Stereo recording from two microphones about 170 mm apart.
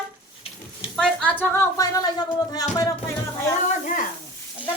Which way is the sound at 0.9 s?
5° left (ahead or behind).